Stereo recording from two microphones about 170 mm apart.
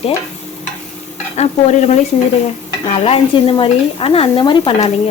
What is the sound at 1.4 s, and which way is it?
Speech, 40° left (ahead or behind).